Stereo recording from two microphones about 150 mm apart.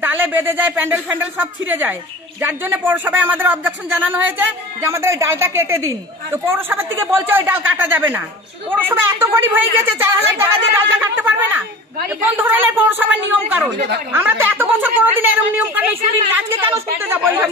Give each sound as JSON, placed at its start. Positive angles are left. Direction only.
{"t": 0.0, "sound": "speech", "side_deg": -15}